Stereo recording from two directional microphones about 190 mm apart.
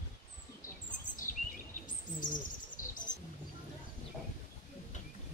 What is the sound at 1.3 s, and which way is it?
Bird, 45° left (ahead or behind).